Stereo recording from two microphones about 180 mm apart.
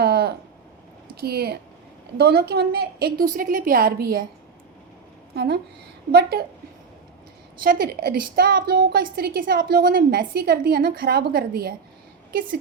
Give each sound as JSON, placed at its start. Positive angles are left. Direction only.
{"t": 0.0, "sound": "a sound", "side_deg": -60}
{"t": 1.0, "sound": "a woman's voice", "side_deg": -60}
{"t": 5.3, "sound": "a woman's voice", "side_deg": -65}
{"t": 7.6, "sound": "a woman's voice", "side_deg": -55}